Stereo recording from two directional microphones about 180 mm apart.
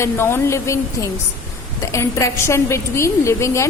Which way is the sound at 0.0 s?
15° left (ahead or behind).